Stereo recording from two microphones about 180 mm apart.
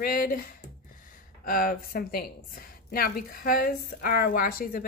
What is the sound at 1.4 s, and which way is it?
Speech, 50° left (ahead or behind).